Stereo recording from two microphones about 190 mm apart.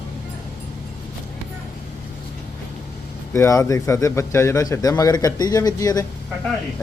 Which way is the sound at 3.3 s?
15° left (ahead or behind).